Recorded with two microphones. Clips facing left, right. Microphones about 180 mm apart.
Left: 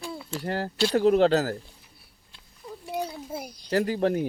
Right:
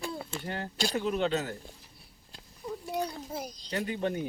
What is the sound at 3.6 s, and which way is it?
Speech, 80° left.